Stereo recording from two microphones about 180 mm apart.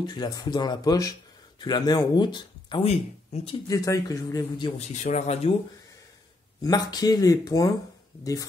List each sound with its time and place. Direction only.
0.0 s speech: 25° left (ahead or behind)
4.7 s speech: 40° left (ahead or behind)
6.6 s speech: 20° left (ahead or behind)